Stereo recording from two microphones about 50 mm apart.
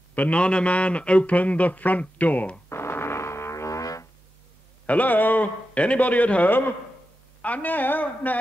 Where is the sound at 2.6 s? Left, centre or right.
Left.